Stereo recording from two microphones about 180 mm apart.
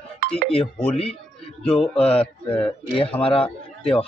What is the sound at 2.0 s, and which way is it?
A man's voice, 30° left (ahead or behind).